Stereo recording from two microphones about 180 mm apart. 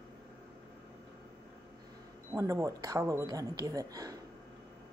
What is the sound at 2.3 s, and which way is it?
Speech, 15° right (ahead or behind).